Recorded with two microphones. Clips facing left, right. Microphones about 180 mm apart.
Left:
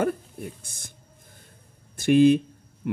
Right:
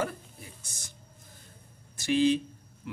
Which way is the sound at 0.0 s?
55° left (ahead or behind).